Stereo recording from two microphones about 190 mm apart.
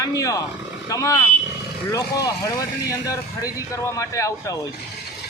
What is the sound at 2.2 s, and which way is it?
Speech, 15° left (ahead or behind).